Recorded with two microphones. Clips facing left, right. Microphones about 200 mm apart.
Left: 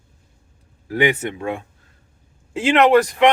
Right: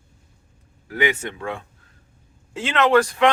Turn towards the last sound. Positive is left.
turn(degrees=20)  # may be behind; listen again after turning